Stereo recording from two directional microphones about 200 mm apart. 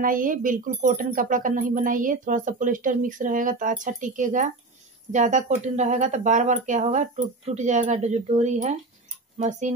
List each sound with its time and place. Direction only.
0.0 s speech: 45° right (ahead or behind)